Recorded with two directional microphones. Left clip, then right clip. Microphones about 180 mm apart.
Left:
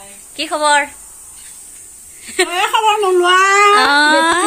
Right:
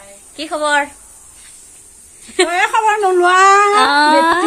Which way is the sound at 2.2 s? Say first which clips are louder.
Right 2 dB; 5° right (ahead or behind).